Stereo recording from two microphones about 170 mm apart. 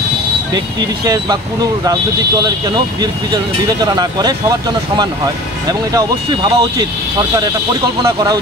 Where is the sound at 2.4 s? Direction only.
25° right (ahead or behind).